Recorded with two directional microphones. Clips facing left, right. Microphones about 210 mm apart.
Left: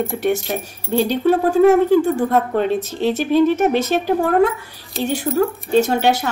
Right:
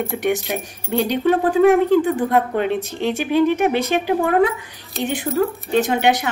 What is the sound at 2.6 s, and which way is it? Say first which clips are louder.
A woman's voice: left 2 dB; 15° right (ahead or behind).